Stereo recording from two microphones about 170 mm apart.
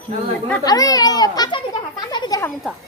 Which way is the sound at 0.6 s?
20° left (ahead or behind).